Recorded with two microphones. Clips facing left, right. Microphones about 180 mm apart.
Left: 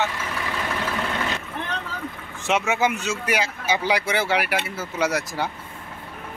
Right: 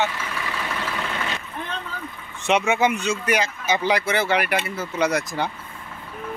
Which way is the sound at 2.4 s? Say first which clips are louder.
Right 2 dB; centre (ahead or behind).